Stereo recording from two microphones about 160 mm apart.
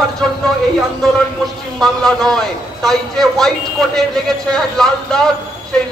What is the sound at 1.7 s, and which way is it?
A man's voice, 5° left (ahead or behind).